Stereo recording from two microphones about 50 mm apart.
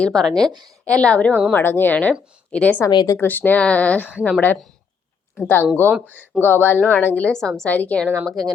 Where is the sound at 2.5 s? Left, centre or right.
Left.